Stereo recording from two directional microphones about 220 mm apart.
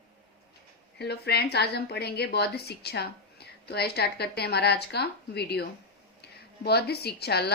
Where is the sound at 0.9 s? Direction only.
50° left (ahead or behind).